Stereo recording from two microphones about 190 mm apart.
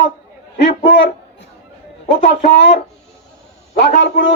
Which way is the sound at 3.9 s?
65° left (ahead or behind).